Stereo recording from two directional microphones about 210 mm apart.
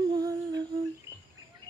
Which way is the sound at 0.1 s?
20° right (ahead or behind).